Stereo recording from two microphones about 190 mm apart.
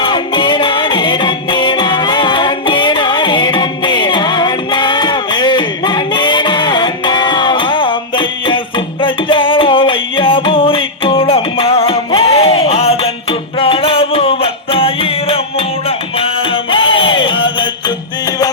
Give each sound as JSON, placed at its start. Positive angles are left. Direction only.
{"t": 0.0, "sound": "music", "side_deg": 25}